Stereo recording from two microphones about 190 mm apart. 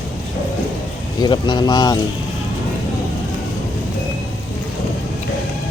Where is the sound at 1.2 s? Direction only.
25° left (ahead or behind).